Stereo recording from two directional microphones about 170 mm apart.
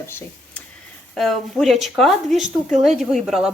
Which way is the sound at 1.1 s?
Centre (ahead or behind).